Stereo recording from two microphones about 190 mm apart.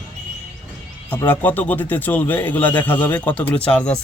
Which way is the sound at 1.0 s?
10° left (ahead or behind).